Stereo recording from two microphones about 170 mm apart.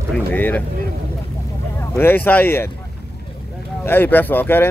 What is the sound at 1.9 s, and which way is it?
Speech, 10° left (ahead or behind).